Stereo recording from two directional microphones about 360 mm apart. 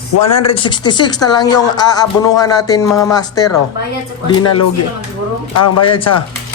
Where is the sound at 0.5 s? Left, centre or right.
Centre.